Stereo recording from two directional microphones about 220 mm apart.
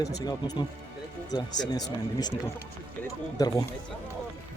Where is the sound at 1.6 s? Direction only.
15° left (ahead or behind).